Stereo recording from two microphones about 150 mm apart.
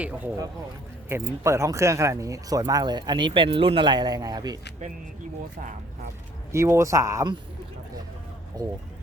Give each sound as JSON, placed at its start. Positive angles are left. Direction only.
{"t": 0.0, "sound": "speech", "side_deg": -10}
{"t": 6.5, "sound": "speech", "side_deg": -20}
{"t": 8.6, "sound": "speech", "side_deg": -25}